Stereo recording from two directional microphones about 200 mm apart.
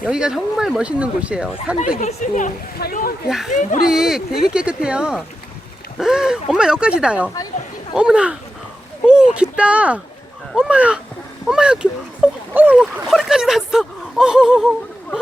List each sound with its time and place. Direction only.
0.0 s speech: 5° right (ahead or behind)
2.0 s speech: 35° left (ahead or behind)
3.2 s speech: centre (ahead or behind)
3.5 s speech: 40° left (ahead or behind)
3.8 s speech: 5° right (ahead or behind)